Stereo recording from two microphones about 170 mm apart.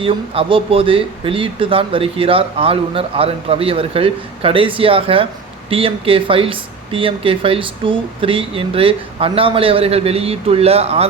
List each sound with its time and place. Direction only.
0.0 s speech: 30° right (ahead or behind)